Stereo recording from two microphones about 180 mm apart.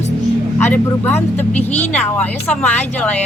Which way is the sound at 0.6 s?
10° left (ahead or behind).